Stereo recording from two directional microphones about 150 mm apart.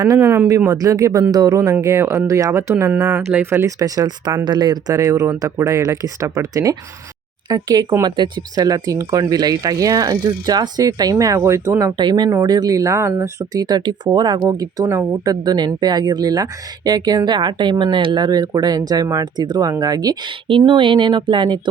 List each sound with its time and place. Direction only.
0.0 s speech: 25° right (ahead or behind)
11.9 s speech: 30° right (ahead or behind)